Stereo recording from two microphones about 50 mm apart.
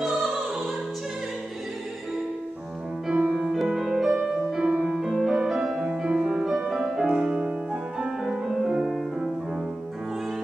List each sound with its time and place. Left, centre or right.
0.0 s music: centre
3.1 s music: right
3.3 s music: centre
3.6 s music: centre